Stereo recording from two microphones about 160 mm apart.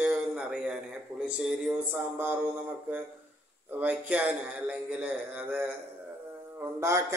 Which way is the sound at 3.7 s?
10° right (ahead or behind).